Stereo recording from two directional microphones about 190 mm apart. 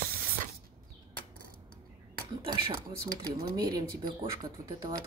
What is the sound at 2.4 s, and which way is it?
Speech, 20° right (ahead or behind).